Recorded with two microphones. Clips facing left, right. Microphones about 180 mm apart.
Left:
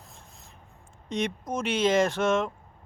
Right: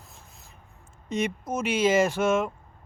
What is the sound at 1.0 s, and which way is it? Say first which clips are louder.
A man's voice: right 2 dB; 5° right (ahead or behind).